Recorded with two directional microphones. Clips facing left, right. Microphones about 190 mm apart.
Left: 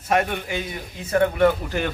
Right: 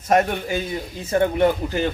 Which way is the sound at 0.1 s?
45° right (ahead or behind).